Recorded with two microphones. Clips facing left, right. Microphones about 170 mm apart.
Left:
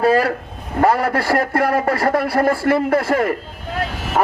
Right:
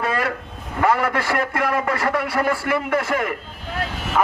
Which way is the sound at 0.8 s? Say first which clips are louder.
Left 3 dB; 35° left (ahead or behind).